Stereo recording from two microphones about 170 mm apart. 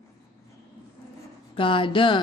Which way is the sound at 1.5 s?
30° left (ahead or behind).